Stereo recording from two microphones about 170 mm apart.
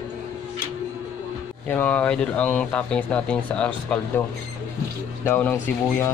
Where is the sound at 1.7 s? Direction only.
10° left (ahead or behind).